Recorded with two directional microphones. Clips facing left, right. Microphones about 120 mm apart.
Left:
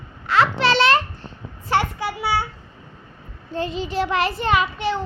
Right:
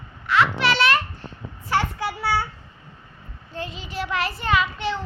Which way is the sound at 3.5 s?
30° left (ahead or behind).